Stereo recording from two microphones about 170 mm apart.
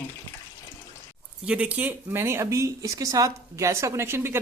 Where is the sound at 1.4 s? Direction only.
5° right (ahead or behind).